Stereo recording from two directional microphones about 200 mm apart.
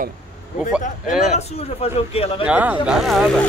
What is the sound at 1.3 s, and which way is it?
Speech, 30° left (ahead or behind).